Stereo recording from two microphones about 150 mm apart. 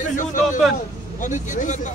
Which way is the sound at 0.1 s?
60° left (ahead or behind).